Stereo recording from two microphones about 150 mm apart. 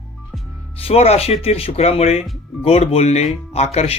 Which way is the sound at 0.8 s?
40° left (ahead or behind).